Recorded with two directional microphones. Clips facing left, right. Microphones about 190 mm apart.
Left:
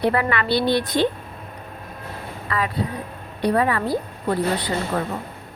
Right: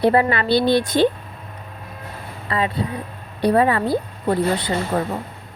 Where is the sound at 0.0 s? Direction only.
30° right (ahead or behind).